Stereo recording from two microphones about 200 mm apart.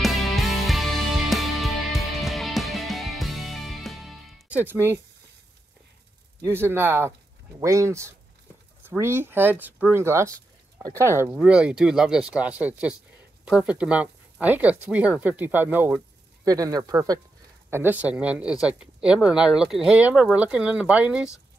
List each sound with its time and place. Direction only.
0.0 s music: centre (ahead or behind)
6.4 s speech: 10° right (ahead or behind)